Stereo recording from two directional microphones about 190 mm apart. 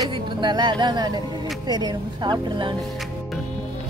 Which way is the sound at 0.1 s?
25° right (ahead or behind).